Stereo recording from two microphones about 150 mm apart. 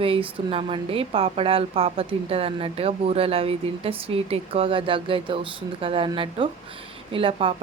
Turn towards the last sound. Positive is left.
turn(degrees=-35)  # may be behind; listen again after turning